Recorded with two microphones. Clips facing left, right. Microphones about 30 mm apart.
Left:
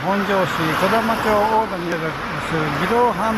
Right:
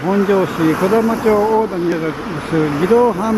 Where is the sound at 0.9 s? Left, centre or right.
Left.